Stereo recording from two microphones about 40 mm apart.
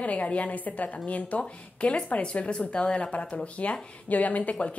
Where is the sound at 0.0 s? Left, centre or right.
Left.